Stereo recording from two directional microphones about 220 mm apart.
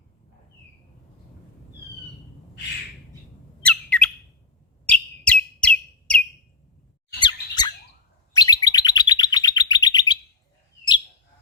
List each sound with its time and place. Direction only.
3.7 s squawk: 5° left (ahead or behind)
4.9 s bird: 5° left (ahead or behind)
7.2 s squeak: 20° left (ahead or behind)
8.4 s bird: 15° left (ahead or behind)